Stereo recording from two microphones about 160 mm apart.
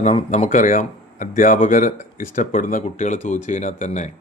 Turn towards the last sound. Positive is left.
turn(degrees=50)  # may be behind; listen again after turning